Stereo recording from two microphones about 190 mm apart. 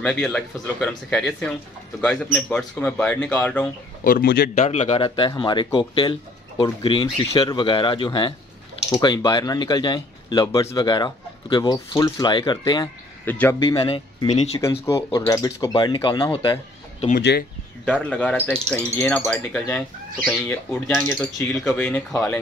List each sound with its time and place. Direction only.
0.0 s speech: 5° left (ahead or behind)
4.0 s speech: 50° left (ahead or behind)
4.6 s speech: 35° left (ahead or behind)
13.2 s speech: 10° left (ahead or behind)
13.7 s speech: 25° left (ahead or behind)
14.6 s speech: 15° left (ahead or behind)
17.2 s speech: 60° left (ahead or behind)
18.1 s speech: 10° left (ahead or behind)